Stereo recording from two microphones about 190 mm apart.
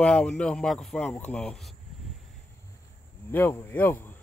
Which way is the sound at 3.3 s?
10° left (ahead or behind).